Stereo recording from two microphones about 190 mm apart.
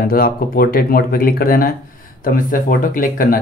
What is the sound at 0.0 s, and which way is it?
Speech, 50° left (ahead or behind).